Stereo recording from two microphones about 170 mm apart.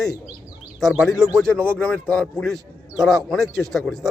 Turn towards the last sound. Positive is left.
turn(degrees=0)  # may be behind; listen again after turning